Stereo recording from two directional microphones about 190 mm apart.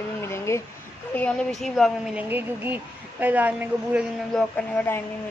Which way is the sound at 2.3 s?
10° right (ahead or behind).